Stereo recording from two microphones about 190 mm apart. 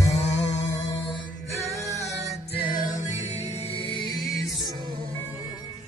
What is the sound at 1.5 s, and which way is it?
Music, 15° left (ahead or behind).